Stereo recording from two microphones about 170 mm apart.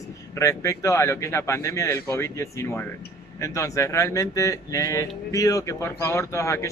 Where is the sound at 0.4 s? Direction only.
20° left (ahead or behind).